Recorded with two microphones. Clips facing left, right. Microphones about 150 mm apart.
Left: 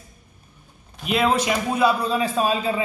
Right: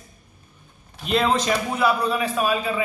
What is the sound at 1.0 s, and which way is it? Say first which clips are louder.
A man's voice: even; 5° left (ahead or behind).